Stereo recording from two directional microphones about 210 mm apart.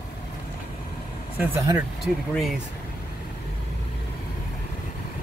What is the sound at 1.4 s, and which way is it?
Speech, 15° right (ahead or behind).